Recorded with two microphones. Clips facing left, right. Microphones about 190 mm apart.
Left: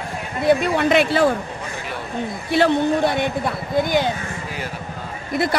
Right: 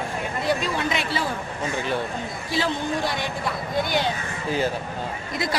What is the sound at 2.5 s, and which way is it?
Speech, 60° left (ahead or behind).